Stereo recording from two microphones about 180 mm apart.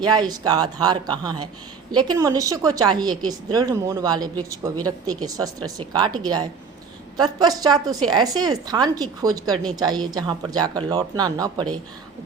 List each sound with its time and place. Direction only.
0.0 s a woman's voice: 25° right (ahead or behind)